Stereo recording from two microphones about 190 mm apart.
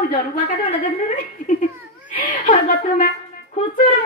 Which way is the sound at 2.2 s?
45° left (ahead or behind).